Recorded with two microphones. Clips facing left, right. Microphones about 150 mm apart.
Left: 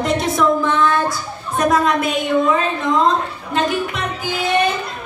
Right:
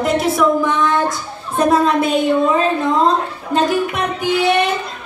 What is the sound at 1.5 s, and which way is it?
A woman's voice, 30° right (ahead or behind).